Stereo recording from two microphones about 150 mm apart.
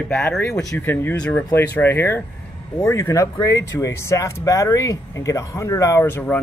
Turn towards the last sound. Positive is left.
turn(degrees=10)  # may be behind; listen again after turning